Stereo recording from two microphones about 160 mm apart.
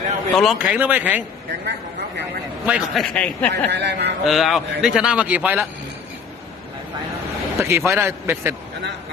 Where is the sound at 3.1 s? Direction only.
10° left (ahead or behind).